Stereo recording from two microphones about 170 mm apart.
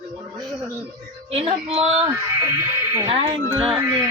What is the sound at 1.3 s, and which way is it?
Speech, 35° right (ahead or behind).